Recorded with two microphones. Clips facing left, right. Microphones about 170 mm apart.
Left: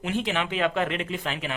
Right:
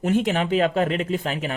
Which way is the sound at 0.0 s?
45° right (ahead or behind).